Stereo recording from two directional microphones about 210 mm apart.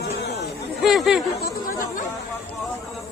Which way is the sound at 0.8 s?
Centre (ahead or behind).